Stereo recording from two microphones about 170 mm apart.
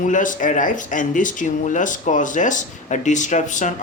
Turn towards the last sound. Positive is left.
turn(degrees=45)  # may be behind; listen again after turning